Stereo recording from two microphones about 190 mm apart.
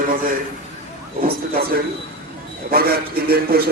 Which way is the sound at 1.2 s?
50° right (ahead or behind).